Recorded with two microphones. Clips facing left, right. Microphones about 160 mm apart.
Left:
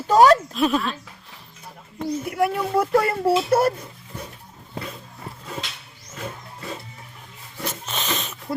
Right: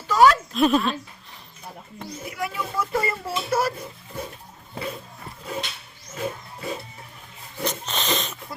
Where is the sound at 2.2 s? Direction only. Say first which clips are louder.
Left 6 dB; 60° left (ahead or behind).